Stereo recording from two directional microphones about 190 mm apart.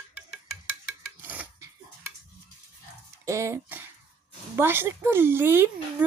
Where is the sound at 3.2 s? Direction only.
15° right (ahead or behind).